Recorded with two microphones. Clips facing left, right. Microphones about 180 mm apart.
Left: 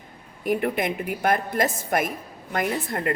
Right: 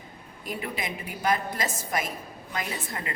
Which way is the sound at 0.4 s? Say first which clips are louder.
Left 10 dB; 55° left (ahead or behind).